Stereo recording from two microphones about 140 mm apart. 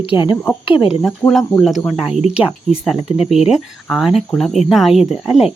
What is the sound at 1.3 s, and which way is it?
Speech, centre (ahead or behind).